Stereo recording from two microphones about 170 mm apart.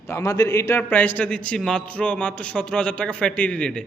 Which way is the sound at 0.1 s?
20° left (ahead or behind).